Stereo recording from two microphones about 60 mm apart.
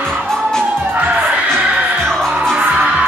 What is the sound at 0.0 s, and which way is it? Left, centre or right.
Music, centre.